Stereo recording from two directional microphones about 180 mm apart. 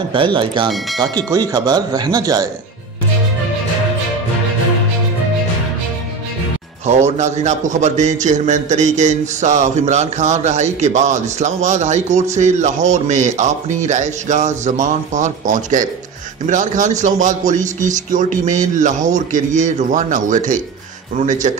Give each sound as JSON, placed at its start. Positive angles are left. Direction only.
{"t": 0.1, "sound": "speech", "side_deg": -30}
{"t": 6.9, "sound": "a man's voice", "side_deg": -40}